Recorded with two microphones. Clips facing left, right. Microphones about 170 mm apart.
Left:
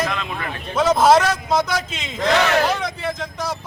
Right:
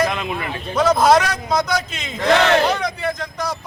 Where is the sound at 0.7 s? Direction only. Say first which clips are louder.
Even; 5° left (ahead or behind).